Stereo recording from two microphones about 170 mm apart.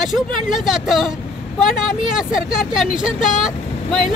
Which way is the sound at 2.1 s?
5° right (ahead or behind).